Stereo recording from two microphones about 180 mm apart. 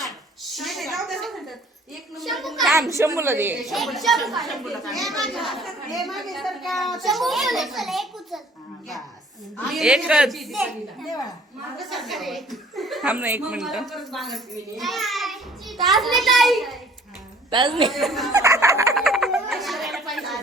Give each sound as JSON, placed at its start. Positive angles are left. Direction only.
{"t": 0.0, "sound": "a sound", "side_deg": 0}
{"t": 2.1, "sound": "speech", "side_deg": 0}
{"t": 3.0, "sound": "a woman's voice", "side_deg": -15}
{"t": 3.6, "sound": "speech", "side_deg": 0}
{"t": 9.6, "sound": "a child's voice", "side_deg": 0}
{"t": 17.5, "sound": "a woman's voice", "side_deg": -25}
{"t": 17.8, "sound": "speech", "side_deg": 0}
{"t": 18.3, "sound": "fowl", "side_deg": -15}
{"t": 18.9, "sound": "a sound", "side_deg": 0}